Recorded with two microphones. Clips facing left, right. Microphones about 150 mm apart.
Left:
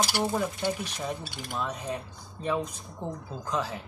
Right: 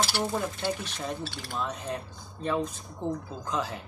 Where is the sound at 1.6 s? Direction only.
5° left (ahead or behind).